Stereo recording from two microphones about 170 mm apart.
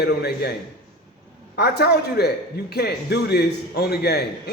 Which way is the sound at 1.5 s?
70° left (ahead or behind).